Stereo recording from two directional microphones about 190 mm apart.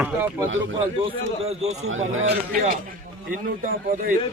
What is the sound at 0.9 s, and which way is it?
Speech, 30° right (ahead or behind).